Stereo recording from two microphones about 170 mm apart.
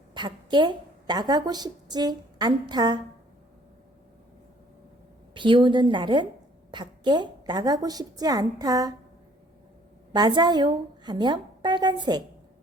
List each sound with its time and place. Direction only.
0.1 s a woman's voice: 25° right (ahead or behind)
5.3 s a woman's voice: 30° right (ahead or behind)
10.1 s a woman's voice: 25° right (ahead or behind)